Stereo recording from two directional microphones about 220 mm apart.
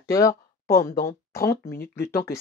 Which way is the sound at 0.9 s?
45° left (ahead or behind).